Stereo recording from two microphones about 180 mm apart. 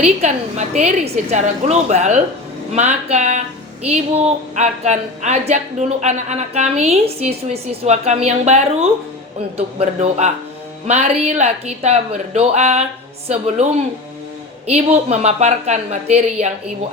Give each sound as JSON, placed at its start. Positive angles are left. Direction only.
{"t": 0.0, "sound": "a woman's voice", "side_deg": -35}
{"t": 14.7, "sound": "a woman's voice", "side_deg": -35}